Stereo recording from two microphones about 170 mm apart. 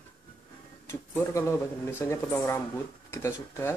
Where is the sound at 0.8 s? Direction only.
15° left (ahead or behind).